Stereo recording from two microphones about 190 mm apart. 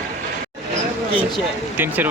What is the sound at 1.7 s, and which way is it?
Speech, 10° right (ahead or behind).